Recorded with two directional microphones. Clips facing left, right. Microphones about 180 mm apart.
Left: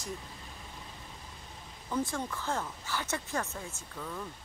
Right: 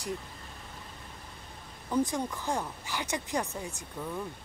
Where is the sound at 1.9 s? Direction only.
15° right (ahead or behind).